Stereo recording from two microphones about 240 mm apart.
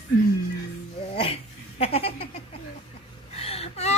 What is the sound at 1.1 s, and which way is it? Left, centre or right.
Speech, left.